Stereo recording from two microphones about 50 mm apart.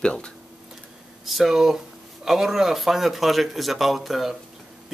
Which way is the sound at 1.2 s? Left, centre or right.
Centre.